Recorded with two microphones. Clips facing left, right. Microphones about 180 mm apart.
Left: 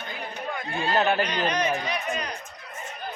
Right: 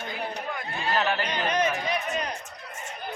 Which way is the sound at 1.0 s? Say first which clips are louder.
Left 4 dB; 20° left (ahead or behind).